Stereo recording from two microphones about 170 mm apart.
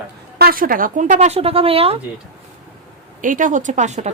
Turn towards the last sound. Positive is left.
turn(degrees=-40)  # may be behind; listen again after turning